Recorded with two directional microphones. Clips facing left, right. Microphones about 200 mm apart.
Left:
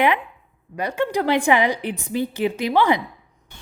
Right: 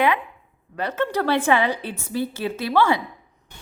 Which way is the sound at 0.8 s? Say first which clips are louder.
Left 1 dB; 15° left (ahead or behind).